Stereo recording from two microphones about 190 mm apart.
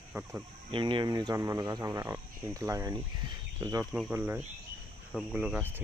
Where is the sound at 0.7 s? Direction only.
25° right (ahead or behind).